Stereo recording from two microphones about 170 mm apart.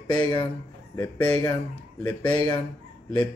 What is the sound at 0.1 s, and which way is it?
Speech, 25° left (ahead or behind).